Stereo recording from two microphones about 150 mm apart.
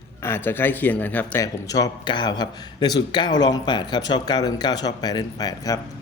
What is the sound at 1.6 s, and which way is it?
A man's voice, 25° left (ahead or behind).